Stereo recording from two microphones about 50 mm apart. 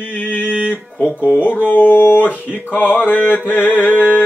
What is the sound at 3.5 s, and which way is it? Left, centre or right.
Music, left.